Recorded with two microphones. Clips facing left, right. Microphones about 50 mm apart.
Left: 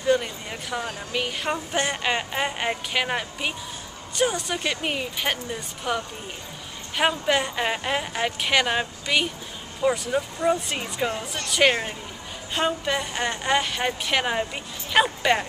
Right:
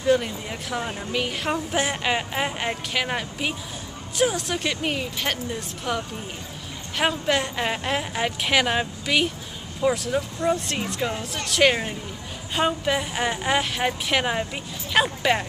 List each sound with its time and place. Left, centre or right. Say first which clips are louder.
0.0 s speech: right 1 dB; centre